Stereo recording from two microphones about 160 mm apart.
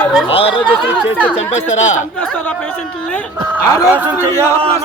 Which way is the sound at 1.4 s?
45° left (ahead or behind).